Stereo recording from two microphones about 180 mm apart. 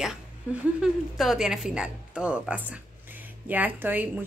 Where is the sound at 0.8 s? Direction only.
Centre (ahead or behind).